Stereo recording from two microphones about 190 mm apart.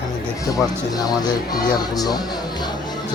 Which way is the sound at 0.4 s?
20° left (ahead or behind).